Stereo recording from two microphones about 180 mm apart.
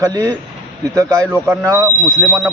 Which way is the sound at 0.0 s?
20° right (ahead or behind).